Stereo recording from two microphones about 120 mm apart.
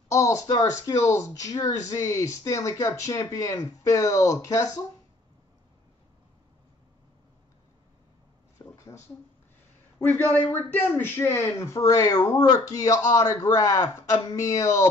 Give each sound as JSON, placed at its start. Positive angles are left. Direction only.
{"t": 0.1, "sound": "speech", "side_deg": 25}
{"t": 8.5, "sound": "a sound", "side_deg": 25}
{"t": 9.9, "sound": "speech", "side_deg": 15}